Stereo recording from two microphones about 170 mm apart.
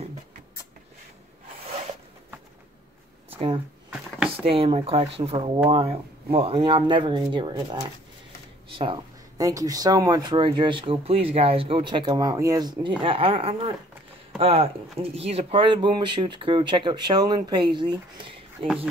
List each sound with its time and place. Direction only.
3.3 s speech: 35° right (ahead or behind)